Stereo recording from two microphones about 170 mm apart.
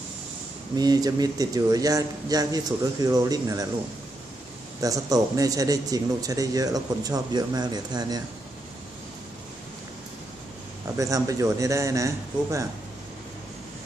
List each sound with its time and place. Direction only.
0.7 s a man's voice: 20° right (ahead or behind)
4.7 s a man's voice: 20° right (ahead or behind)
11.0 s a man's voice: 20° right (ahead or behind)